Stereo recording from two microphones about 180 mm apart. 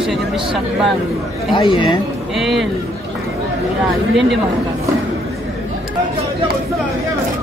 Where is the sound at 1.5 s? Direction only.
25° left (ahead or behind).